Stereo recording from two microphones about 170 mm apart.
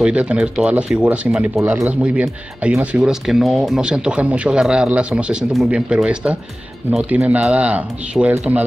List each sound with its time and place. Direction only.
0.0 s speech: 5° right (ahead or behind)